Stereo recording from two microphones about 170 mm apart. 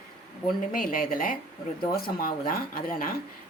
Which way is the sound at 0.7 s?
55° left (ahead or behind).